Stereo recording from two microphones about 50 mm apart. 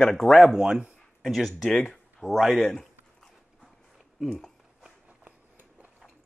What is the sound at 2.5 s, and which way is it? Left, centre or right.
Speech, centre.